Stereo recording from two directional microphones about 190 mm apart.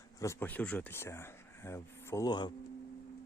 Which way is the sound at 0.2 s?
15° left (ahead or behind).